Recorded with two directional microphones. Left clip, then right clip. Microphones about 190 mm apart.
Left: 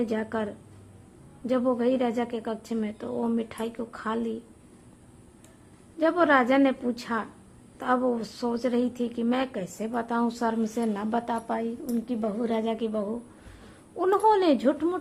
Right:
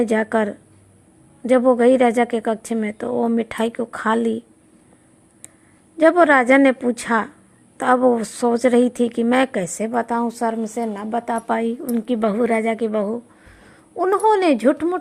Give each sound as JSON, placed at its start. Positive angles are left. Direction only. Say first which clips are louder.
{"t": 0.0, "sound": "a woman's voice", "louder": "right 11 dB", "side_deg": -35}
{"t": 6.0, "sound": "a woman's voice", "louder": "right 9 dB", "side_deg": -35}
{"t": 11.3, "sound": "a woman's voice", "louder": "right 9 dB", "side_deg": -35}